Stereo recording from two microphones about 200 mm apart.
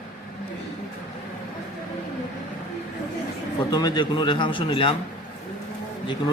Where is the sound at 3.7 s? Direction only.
20° left (ahead or behind).